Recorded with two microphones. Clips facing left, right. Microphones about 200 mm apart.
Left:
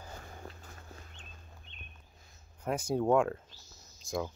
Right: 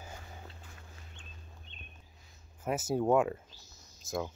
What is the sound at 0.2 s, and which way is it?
Boat, 45° left (ahead or behind).